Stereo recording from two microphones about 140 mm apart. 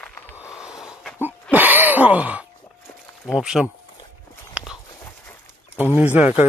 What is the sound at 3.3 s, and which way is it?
Speech, 5° right (ahead or behind).